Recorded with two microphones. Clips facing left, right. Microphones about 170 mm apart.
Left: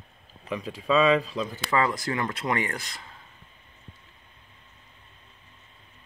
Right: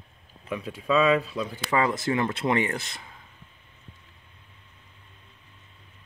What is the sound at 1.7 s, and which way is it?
Speech, 20° right (ahead or behind).